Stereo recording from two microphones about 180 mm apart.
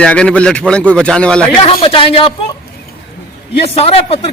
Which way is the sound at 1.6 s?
30° left (ahead or behind).